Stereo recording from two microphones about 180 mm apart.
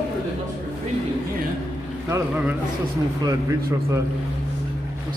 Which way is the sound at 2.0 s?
10° right (ahead or behind).